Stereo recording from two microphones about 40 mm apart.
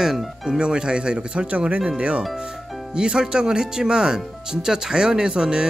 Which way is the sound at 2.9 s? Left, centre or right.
Right.